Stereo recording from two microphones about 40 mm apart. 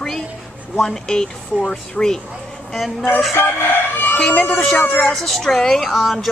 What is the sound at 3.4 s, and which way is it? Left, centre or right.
Crowing, left.